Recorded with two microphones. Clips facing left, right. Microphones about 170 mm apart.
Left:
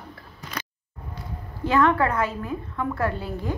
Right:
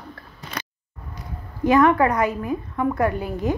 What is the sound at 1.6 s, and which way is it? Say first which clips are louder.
A woman's voice: right 4 dB; 15° right (ahead or behind).